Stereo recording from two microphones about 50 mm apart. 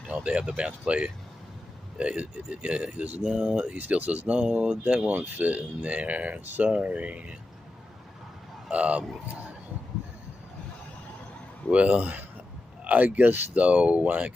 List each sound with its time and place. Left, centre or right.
0.1 s speech: right
3.2 s speech: centre
3.7 s speech: right
5.0 s speech: right
8.6 s speech: right
11.7 s speech: right